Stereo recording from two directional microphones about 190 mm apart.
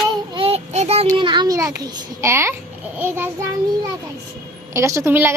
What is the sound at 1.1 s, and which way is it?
A child's voice, 25° right (ahead or behind).